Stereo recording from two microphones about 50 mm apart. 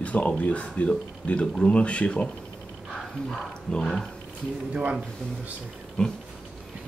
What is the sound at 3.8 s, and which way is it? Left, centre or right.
Speech, centre.